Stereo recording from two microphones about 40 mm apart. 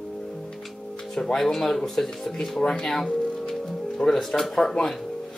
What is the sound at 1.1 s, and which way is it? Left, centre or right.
Speech, centre.